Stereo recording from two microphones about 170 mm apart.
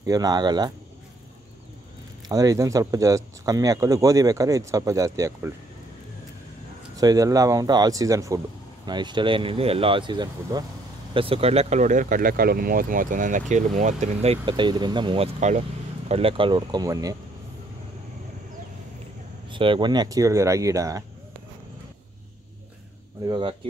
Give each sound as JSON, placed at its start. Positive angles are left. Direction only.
{"t": 0.0, "sound": "speech", "side_deg": -20}
{"t": 2.2, "sound": "speech", "side_deg": -20}
{"t": 7.0, "sound": "speech", "side_deg": -20}
{"t": 19.5, "sound": "speech", "side_deg": -30}
{"t": 23.2, "sound": "speech", "side_deg": -25}